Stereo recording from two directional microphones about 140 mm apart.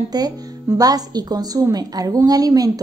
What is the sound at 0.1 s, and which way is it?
Speech, 25° right (ahead or behind).